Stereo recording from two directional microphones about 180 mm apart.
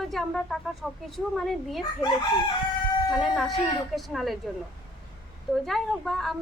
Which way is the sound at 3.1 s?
Centre (ahead or behind).